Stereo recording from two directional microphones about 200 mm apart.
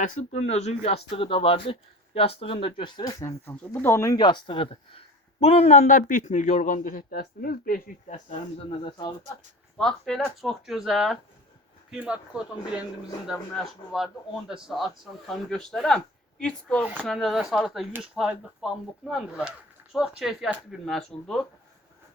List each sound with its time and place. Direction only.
0.0 s a man's voice: 35° left (ahead or behind)
8.8 s speech: 20° left (ahead or behind)
9.7 s speech: centre (ahead or behind)